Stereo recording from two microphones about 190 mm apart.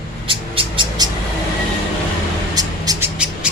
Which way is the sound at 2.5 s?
20° right (ahead or behind).